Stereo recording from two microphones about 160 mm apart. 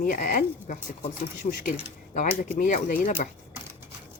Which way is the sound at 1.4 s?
35° left (ahead or behind).